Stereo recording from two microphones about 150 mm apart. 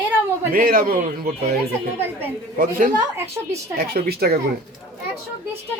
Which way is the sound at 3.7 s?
85° right.